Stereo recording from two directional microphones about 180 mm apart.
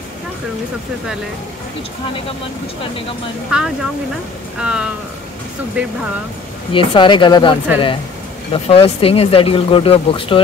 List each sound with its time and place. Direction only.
3.4 s speech: 5° right (ahead or behind)
6.7 s speech: 25° left (ahead or behind)